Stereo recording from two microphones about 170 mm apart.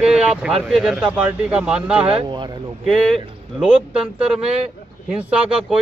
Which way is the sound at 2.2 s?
25° right (ahead or behind).